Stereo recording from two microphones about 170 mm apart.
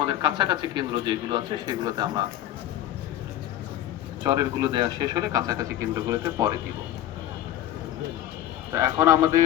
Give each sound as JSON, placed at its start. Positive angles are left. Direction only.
{"t": 0.0, "sound": "speech", "side_deg": -25}
{"t": 4.2, "sound": "speech", "side_deg": -25}
{"t": 8.7, "sound": "a man's voice", "side_deg": -15}